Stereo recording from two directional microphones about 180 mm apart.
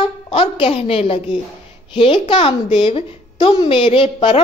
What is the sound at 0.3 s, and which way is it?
A woman's voice, 30° left (ahead or behind).